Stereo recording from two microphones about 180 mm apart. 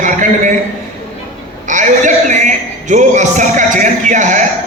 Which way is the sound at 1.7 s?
45° right (ahead or behind).